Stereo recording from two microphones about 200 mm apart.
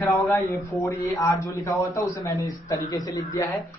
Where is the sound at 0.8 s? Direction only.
15° left (ahead or behind).